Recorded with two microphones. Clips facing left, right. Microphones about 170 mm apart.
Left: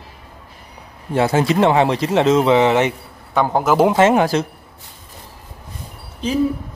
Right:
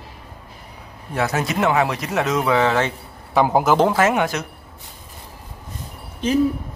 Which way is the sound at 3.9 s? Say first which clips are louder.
Left 5 dB; 30° left (ahead or behind).